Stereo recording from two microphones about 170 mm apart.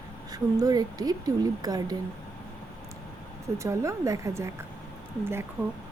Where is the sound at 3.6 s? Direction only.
15° right (ahead or behind).